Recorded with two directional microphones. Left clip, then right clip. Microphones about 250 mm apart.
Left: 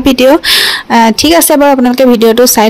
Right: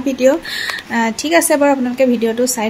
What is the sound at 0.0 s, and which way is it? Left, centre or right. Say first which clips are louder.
Speech: left 8 dB; left.